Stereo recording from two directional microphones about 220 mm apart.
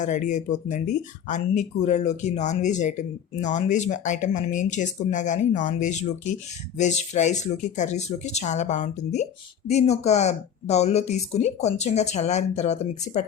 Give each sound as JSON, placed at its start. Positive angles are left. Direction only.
{"t": 0.0, "sound": "speech", "side_deg": 35}